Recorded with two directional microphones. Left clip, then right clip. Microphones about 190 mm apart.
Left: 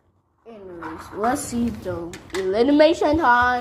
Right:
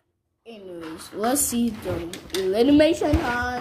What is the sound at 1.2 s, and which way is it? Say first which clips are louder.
Speech: left 1 dB; 35° right (ahead or behind).